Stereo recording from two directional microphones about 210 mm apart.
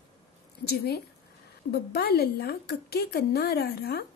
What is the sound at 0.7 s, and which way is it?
A woman's voice, 50° left (ahead or behind).